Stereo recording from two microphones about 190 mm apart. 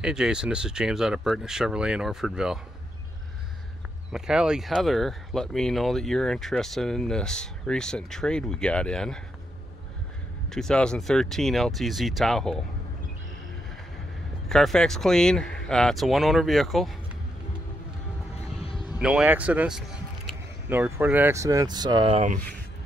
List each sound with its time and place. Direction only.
0.0 s speech: 5° right (ahead or behind)
4.1 s speech: 5° right (ahead or behind)
10.5 s speech: 5° left (ahead or behind)
14.5 s speech: centre (ahead or behind)
18.6 s a sound: 25° left (ahead or behind)
18.9 s speech: 5° right (ahead or behind); by 22.1 s 20° right (ahead or behind)
22.1 s speech: 40° right (ahead or behind)